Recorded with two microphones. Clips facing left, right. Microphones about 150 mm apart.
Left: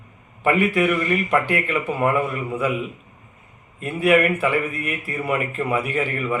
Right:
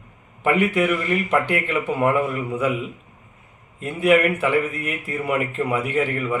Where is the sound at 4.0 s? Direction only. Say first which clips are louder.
Even; 20° right (ahead or behind).